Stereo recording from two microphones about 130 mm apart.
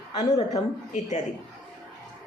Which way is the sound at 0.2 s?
65° left (ahead or behind).